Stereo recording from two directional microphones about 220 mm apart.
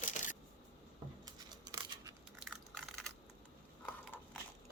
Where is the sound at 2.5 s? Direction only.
Centre (ahead or behind).